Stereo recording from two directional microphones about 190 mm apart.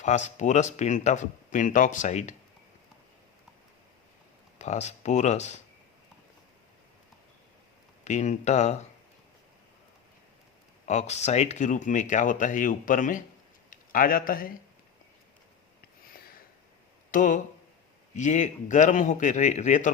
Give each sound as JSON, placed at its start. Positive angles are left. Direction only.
{"t": 0.0, "sound": "speech", "side_deg": 40}
{"t": 4.5, "sound": "speech", "side_deg": 35}
{"t": 8.0, "sound": "speech", "side_deg": 40}
{"t": 10.8, "sound": "speech", "side_deg": 35}
{"t": 17.1, "sound": "speech", "side_deg": 45}